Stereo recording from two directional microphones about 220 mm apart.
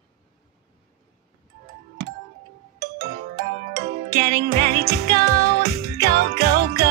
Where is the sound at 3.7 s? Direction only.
45° right (ahead or behind).